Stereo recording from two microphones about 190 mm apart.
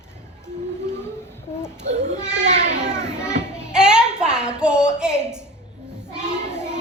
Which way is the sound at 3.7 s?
5° right (ahead or behind).